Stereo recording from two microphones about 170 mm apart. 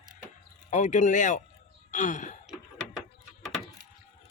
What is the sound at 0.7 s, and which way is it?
Speech, 45° left (ahead or behind).